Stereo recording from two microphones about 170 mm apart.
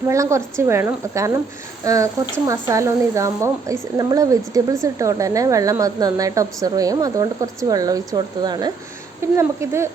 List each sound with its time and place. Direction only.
0.1 s a woman's voice: 15° right (ahead or behind)